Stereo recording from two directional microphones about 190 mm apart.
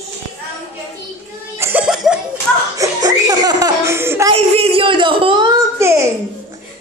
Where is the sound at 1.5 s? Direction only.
15° right (ahead or behind).